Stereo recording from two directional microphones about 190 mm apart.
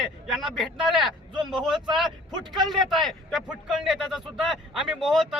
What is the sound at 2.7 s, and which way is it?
A man's voice, centre (ahead or behind).